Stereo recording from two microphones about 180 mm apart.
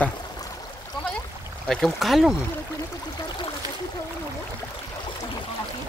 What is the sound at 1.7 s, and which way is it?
Speech, centre (ahead or behind).